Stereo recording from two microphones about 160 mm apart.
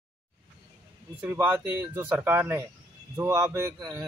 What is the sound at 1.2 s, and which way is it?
Speech, 10° right (ahead or behind).